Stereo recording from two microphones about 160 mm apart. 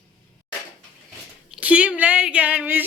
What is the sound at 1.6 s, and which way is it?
Speech, 10° right (ahead or behind).